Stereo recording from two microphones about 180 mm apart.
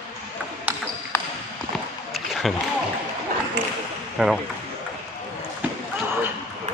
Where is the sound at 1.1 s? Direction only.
10° left (ahead or behind).